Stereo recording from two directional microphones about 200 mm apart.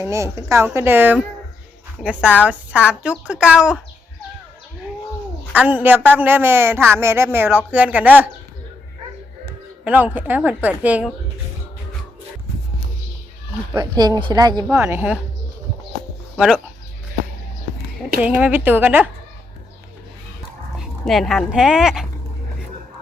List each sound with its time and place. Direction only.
0.0 s a man's voice: 15° right (ahead or behind)
2.4 s a woman's voice: 5° right (ahead or behind)
5.5 s a man's voice: 10° right (ahead or behind)
9.8 s a man's voice: 10° right (ahead or behind)
13.7 s a man's voice: 20° right (ahead or behind)
18.2 s a man's voice: 5° right (ahead or behind)
21.0 s speech: centre (ahead or behind)